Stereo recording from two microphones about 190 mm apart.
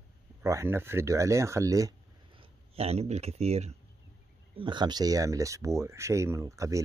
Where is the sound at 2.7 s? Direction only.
30° right (ahead or behind).